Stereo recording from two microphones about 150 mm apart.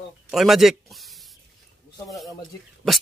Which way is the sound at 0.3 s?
Centre (ahead or behind).